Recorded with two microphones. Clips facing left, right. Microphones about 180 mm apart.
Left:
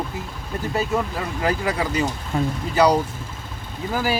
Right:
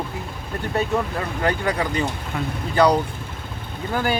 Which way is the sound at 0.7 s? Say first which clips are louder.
Right 1 dB; centre (ahead or behind).